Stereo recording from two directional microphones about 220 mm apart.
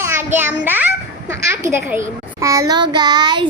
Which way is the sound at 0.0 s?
10° right (ahead or behind).